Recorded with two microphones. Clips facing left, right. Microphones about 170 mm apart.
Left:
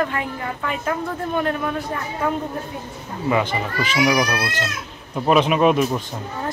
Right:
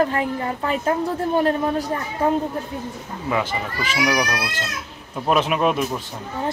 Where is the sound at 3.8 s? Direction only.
10° right (ahead or behind).